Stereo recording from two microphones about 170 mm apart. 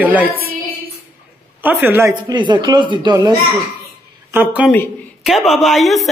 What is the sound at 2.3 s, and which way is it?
Speech, 25° right (ahead or behind).